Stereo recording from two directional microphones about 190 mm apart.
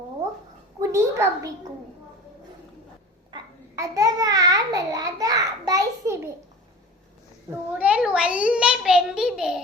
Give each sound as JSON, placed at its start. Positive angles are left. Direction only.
{"t": 0.8, "sound": "a woman's voice", "side_deg": -15}
{"t": 3.3, "sound": "babbling", "side_deg": -20}
{"t": 7.8, "sound": "a child's voice", "side_deg": -5}